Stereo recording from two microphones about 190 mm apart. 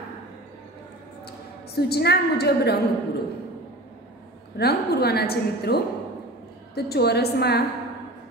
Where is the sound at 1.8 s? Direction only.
60° left (ahead or behind).